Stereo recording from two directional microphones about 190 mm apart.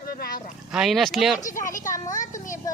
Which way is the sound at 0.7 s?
Centre (ahead or behind).